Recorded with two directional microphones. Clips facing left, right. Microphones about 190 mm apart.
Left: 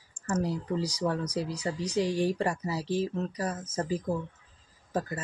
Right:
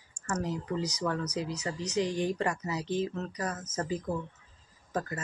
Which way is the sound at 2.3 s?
30° left (ahead or behind).